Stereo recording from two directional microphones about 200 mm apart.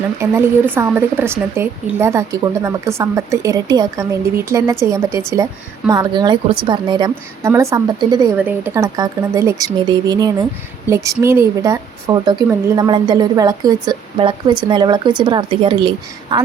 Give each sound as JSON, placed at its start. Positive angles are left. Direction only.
{"t": 0.2, "sound": "a woman's voice", "side_deg": -10}